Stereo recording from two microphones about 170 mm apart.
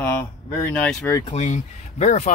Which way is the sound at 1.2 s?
45° left (ahead or behind).